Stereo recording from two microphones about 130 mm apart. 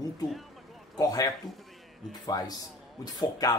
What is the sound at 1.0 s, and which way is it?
Speech, 30° left (ahead or behind).